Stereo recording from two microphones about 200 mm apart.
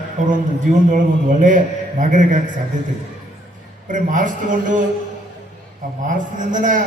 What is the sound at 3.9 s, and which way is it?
Speech, 40° right (ahead or behind).